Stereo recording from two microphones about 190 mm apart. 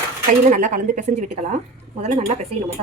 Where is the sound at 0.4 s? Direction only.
45° right (ahead or behind).